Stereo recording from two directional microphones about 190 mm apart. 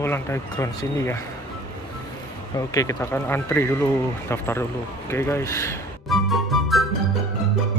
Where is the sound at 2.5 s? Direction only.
20° left (ahead or behind).